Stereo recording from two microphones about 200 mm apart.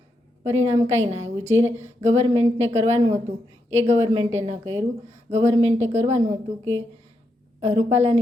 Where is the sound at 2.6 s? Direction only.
35° right (ahead or behind).